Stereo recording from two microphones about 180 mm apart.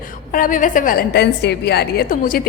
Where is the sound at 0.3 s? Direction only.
50° left (ahead or behind).